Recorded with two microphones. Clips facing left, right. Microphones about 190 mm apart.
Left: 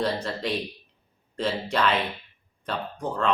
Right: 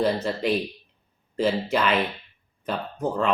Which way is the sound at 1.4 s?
5° right (ahead or behind).